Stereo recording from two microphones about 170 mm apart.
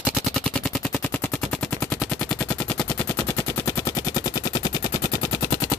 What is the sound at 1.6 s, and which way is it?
Machine gun, 5° left (ahead or behind).